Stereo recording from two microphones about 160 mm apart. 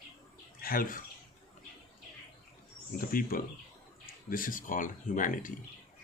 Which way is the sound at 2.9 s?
65° left (ahead or behind).